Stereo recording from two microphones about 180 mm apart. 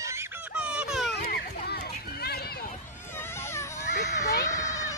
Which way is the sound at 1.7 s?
60° left (ahead or behind).